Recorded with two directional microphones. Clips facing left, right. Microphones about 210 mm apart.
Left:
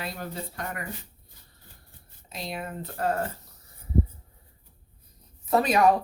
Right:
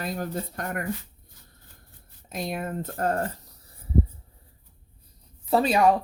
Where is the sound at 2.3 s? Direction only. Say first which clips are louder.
Right 5 dB; 50° right (ahead or behind).